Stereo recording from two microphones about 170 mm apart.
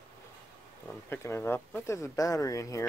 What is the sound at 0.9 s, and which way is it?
Speech, 15° left (ahead or behind).